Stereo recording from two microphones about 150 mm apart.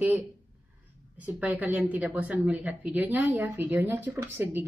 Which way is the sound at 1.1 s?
10° right (ahead or behind).